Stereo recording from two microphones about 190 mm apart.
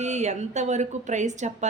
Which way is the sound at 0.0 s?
35° right (ahead or behind).